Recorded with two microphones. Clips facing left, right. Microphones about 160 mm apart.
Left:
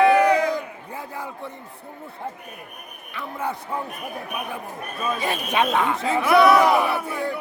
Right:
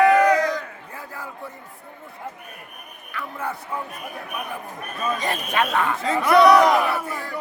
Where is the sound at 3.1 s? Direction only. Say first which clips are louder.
Left 1 dB; 20° left (ahead or behind).